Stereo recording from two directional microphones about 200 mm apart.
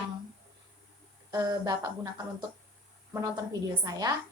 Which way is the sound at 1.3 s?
20° right (ahead or behind).